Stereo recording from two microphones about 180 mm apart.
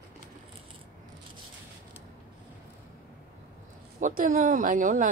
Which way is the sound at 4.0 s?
45° right (ahead or behind).